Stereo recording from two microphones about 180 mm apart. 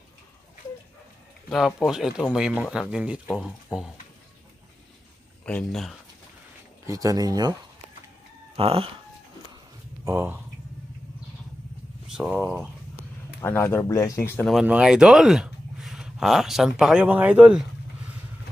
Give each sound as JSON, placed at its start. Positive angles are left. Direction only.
{"t": 1.9, "sound": "speech", "side_deg": -5}
{"t": 5.4, "sound": "speech", "side_deg": 5}
{"t": 6.9, "sound": "speech", "side_deg": -20}
{"t": 8.5, "sound": "speech", "side_deg": -30}
{"t": 10.0, "sound": "speech", "side_deg": -10}
{"t": 12.1, "sound": "speech", "side_deg": -5}
{"t": 13.4, "sound": "speech", "side_deg": 10}
{"t": 14.5, "sound": "speech", "side_deg": -5}